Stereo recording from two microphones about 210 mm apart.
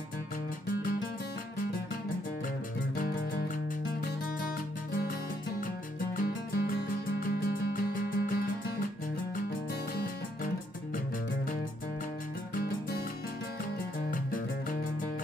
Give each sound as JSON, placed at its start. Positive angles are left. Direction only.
{"t": 6.1, "sound": "music", "side_deg": 45}
{"t": 12.5, "sound": "music", "side_deg": 45}
{"t": 14.1, "sound": "music", "side_deg": 40}